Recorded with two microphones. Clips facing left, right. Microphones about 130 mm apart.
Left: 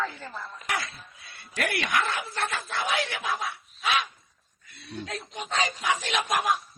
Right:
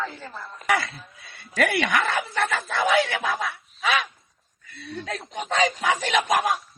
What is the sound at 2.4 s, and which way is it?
Speech, 75° right (ahead or behind).